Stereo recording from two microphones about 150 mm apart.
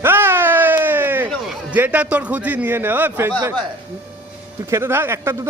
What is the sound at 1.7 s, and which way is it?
A man's voice, 10° right (ahead or behind).